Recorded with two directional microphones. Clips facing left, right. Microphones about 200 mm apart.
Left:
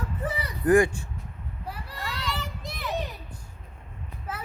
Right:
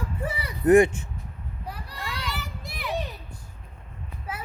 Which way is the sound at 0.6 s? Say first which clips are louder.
Right 3 dB; 25° right (ahead or behind).